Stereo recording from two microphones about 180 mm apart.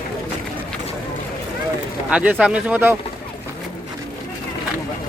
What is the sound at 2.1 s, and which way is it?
Speech, 5° right (ahead or behind).